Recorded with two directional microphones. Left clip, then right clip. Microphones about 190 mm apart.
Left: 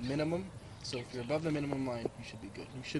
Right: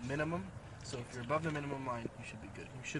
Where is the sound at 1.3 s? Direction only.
50° left (ahead or behind).